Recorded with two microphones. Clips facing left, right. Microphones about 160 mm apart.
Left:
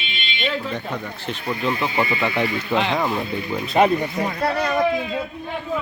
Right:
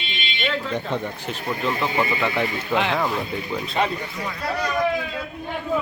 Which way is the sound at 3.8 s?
50° left (ahead or behind).